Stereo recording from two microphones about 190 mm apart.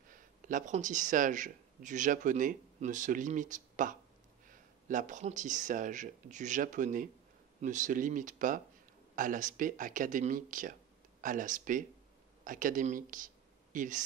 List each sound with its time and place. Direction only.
0.1 s speech: 45° right (ahead or behind)